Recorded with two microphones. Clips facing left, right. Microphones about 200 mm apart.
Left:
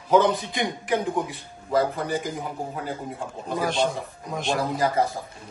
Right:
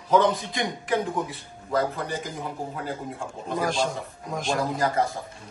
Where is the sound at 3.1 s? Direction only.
Centre (ahead or behind).